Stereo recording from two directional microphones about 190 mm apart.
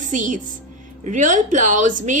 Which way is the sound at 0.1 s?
40° right (ahead or behind).